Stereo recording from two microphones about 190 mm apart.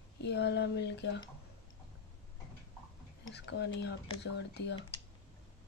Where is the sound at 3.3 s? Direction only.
60° left (ahead or behind).